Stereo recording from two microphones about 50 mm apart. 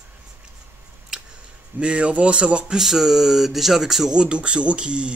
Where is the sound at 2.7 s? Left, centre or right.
Centre.